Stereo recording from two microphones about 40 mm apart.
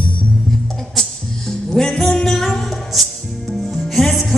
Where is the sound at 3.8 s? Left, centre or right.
Centre.